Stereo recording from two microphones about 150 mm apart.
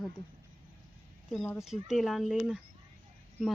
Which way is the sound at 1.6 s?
Centre (ahead or behind).